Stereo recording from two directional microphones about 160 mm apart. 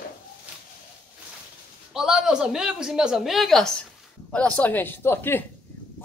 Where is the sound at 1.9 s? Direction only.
5° right (ahead or behind).